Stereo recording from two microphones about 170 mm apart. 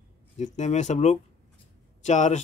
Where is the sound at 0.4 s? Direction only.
45° left (ahead or behind).